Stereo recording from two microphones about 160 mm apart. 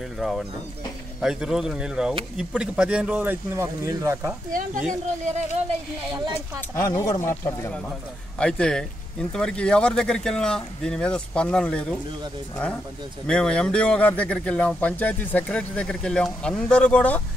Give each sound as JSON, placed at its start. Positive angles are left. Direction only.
{"t": 0.2, "sound": "speech", "side_deg": 0}
{"t": 4.5, "sound": "speech", "side_deg": -55}
{"t": 6.7, "sound": "speech", "side_deg": 20}
{"t": 8.4, "sound": "speech", "side_deg": 5}
{"t": 13.3, "sound": "speech", "side_deg": 5}